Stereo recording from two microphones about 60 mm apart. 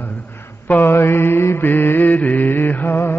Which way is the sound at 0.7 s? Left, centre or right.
Left.